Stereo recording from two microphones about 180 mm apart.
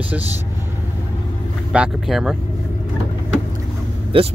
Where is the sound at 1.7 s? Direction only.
5° right (ahead or behind).